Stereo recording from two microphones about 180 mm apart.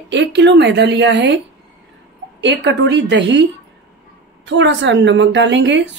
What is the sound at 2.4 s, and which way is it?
A woman's voice, 75° right (ahead or behind).